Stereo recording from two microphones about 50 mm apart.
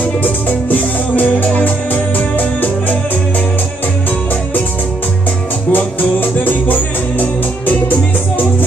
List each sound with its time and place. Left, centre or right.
0.2 s music: left
5.7 s music: left